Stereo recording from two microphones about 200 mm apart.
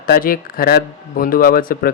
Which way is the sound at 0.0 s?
45° left (ahead or behind).